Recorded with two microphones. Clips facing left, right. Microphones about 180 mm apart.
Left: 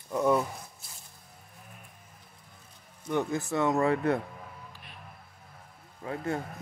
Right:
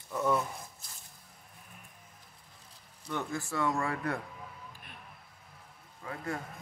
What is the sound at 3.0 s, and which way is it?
Speech, 20° left (ahead or behind).